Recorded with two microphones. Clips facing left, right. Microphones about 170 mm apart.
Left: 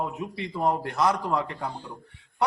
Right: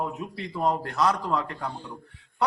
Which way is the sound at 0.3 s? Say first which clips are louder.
Even; 15° left (ahead or behind).